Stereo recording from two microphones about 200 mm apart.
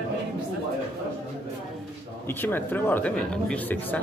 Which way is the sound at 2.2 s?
10° left (ahead or behind).